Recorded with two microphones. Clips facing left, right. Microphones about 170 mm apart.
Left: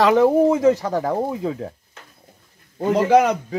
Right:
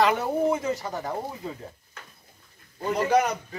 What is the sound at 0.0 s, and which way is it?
Speech, 90° left.